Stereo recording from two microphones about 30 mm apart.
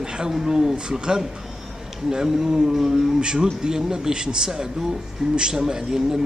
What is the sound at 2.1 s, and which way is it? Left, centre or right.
A man's voice, centre.